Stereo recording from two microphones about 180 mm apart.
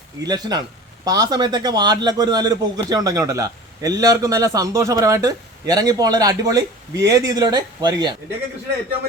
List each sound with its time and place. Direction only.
0.2 s a man's voice: 20° right (ahead or behind)